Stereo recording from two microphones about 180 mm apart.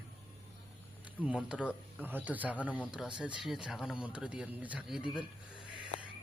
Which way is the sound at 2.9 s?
5° right (ahead or behind).